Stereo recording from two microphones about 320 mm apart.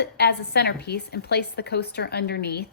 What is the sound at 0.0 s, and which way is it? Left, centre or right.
A woman's voice, left.